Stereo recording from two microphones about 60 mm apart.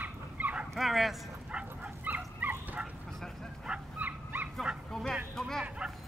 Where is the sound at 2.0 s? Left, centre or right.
Right.